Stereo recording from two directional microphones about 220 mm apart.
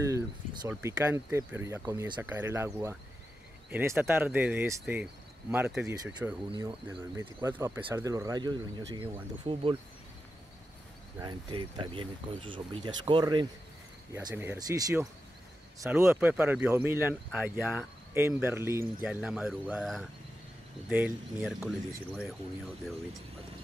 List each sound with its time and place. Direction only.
0.0 s speech: 15° right (ahead or behind)
11.1 s speech: 20° right (ahead or behind); by 21.7 s centre (ahead or behind)